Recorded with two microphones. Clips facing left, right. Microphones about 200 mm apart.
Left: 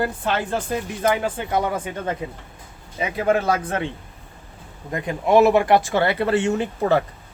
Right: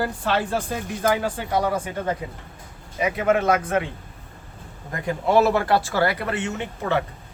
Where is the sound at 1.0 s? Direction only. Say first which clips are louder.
Even; 20° left (ahead or behind).